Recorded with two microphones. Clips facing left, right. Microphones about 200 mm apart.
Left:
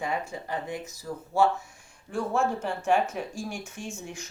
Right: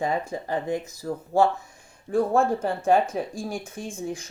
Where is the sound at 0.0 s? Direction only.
40° right (ahead or behind).